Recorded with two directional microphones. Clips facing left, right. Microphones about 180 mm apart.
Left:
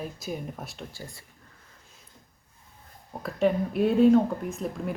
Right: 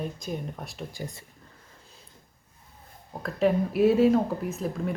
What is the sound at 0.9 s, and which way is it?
Speech, 20° right (ahead or behind).